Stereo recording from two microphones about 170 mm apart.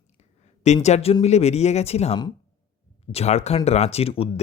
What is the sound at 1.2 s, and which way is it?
Speech, 40° left (ahead or behind).